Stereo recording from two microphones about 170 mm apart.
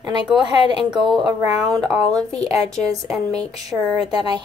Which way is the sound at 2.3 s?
35° left (ahead or behind).